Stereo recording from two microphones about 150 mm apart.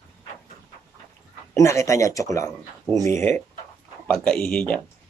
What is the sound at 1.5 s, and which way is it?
Speech, 20° left (ahead or behind).